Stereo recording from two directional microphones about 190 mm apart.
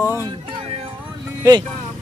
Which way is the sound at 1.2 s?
20° right (ahead or behind).